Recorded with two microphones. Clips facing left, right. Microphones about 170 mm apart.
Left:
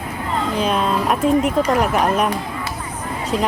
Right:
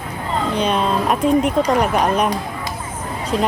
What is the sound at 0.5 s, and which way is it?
Speech, centre (ahead or behind).